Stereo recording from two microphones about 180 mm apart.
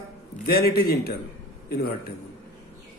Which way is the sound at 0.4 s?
60° left (ahead or behind).